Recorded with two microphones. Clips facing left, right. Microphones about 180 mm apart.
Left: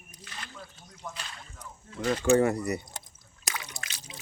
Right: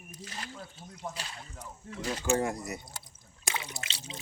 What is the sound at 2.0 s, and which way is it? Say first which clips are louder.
Speech: left 7 dB; 65° left (ahead or behind).